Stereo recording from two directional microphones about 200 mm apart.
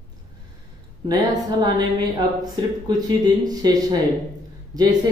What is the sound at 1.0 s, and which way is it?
A woman's voice, 20° right (ahead or behind).